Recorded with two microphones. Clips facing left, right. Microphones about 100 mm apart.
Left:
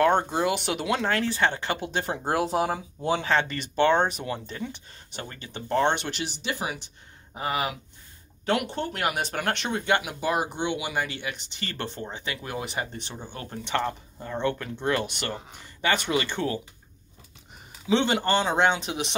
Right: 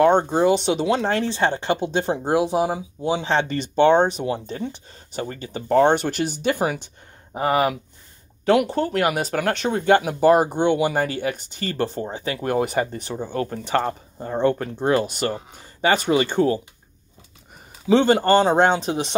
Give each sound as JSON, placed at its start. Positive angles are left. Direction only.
{"t": 0.0, "sound": "speech", "side_deg": -30}
{"t": 2.2, "sound": "speech", "side_deg": -15}
{"t": 3.3, "sound": "speech", "side_deg": -30}
{"t": 17.8, "sound": "speech", "side_deg": -45}